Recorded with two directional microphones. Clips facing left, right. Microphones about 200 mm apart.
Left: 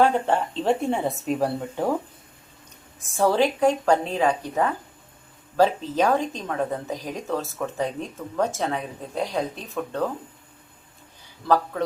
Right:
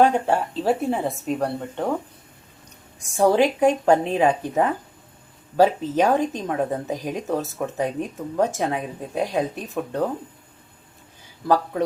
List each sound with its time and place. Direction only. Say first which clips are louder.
0.0 s speech: right 2 dB; 10° right (ahead or behind); by 2.0 s 5° left (ahead or behind)
3.2 s a woman's voice: right 3 dB; 20° right (ahead or behind)
11.4 s a woman's voice: right 2 dB; 15° right (ahead or behind)